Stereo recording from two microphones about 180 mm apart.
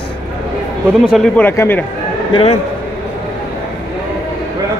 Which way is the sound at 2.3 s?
35° left (ahead or behind).